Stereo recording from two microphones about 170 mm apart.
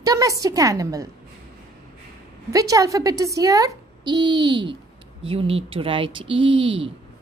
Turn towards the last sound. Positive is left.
turn(degrees=-30)  # may be behind; listen again after turning